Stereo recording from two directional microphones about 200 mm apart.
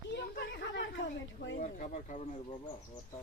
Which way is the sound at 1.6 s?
35° left (ahead or behind).